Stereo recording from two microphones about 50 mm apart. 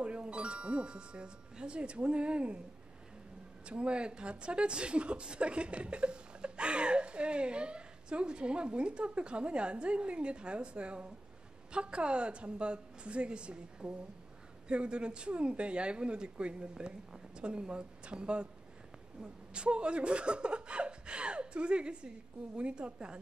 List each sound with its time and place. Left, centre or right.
0.0 s a woman's voice: right
3.6 s a woman's voice: right
19.5 s a woman's voice: right